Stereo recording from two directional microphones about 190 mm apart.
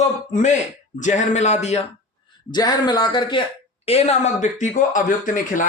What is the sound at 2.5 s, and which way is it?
Speech, 20° left (ahead or behind).